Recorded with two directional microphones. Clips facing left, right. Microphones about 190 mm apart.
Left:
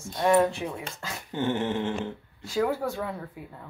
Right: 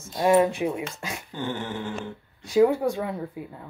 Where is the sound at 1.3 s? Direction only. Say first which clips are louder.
Left 5 dB; 20° left (ahead or behind).